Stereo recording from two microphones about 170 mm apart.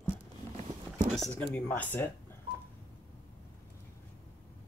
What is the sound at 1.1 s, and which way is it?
Speech, 5° left (ahead or behind).